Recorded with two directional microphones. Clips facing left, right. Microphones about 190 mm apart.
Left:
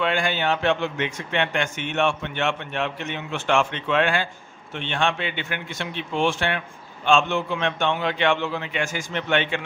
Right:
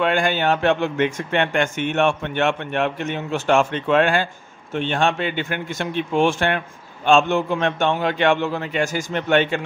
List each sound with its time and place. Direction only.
0.0 s a man's voice: 50° right (ahead or behind)